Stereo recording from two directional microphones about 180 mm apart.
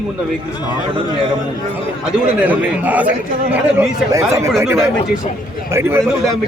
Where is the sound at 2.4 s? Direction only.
10° right (ahead or behind).